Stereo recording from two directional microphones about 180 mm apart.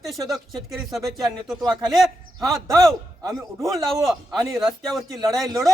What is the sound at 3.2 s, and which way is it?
Speech, 20° right (ahead or behind).